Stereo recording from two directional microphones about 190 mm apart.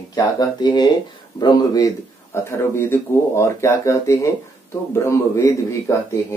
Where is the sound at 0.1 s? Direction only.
20° left (ahead or behind).